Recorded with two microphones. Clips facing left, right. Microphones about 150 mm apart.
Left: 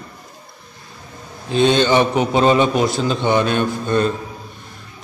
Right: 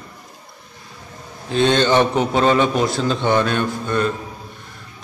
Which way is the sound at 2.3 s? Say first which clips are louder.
Left 2 dB; 20° left (ahead or behind).